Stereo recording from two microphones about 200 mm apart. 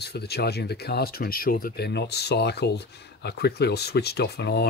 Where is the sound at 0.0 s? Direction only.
55° left (ahead or behind).